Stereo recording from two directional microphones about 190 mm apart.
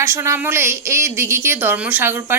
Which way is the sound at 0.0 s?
15° right (ahead or behind).